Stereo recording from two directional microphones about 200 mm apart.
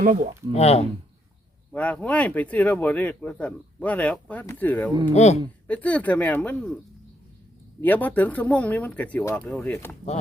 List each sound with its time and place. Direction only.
0.0 s speech: 35° right (ahead or behind)
0.5 s speech: 30° left (ahead or behind)
1.7 s speech: 5° left (ahead or behind)
5.1 s speech: 35° left (ahead or behind)
5.6 s speech: 5° left (ahead or behind)
7.8 s speech: 10° left (ahead or behind)